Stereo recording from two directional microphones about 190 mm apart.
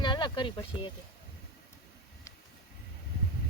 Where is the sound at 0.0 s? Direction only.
25° left (ahead or behind).